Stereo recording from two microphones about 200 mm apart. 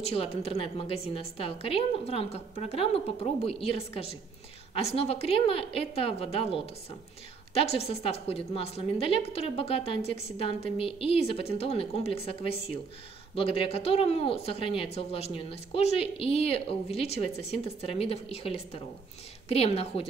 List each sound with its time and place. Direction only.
0.0 s a woman's voice: 30° left (ahead or behind)